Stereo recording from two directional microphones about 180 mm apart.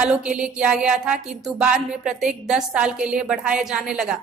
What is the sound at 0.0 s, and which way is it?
A woman's voice, 5° right (ahead or behind).